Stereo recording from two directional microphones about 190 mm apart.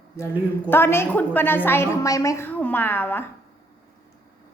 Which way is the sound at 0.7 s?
10° left (ahead or behind).